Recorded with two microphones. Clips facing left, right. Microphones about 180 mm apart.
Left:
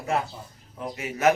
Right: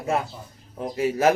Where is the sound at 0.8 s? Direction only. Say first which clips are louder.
Right 7 dB; 30° right (ahead or behind).